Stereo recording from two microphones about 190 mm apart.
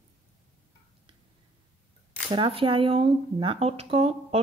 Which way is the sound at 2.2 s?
25° right (ahead or behind).